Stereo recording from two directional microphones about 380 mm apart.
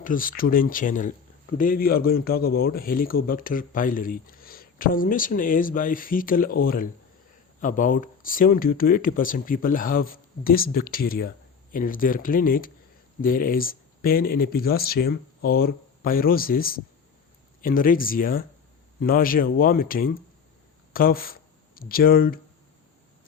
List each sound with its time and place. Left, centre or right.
0.0 s a man's voice: left